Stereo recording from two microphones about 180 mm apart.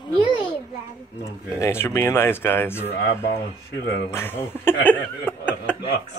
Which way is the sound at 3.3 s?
65° left (ahead or behind).